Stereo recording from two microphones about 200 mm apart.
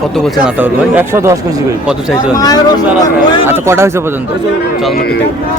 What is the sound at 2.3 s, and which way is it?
Speech, 20° left (ahead or behind).